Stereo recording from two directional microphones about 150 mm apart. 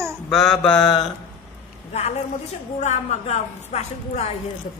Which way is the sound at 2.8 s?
50° left (ahead or behind).